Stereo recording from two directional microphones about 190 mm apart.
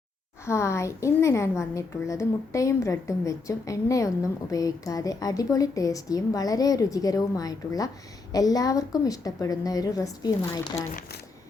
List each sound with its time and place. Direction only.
0.4 s a woman's voice: 15° left (ahead or behind)